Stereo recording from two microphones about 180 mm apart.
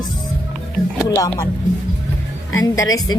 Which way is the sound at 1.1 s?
15° left (ahead or behind).